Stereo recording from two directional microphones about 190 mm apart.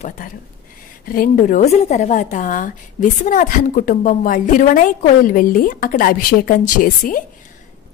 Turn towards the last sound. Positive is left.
turn(degrees=45)  # may be behind; listen again after turning